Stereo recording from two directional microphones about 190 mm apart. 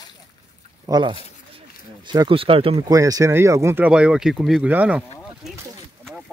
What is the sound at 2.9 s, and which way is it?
Speech, 15° right (ahead or behind).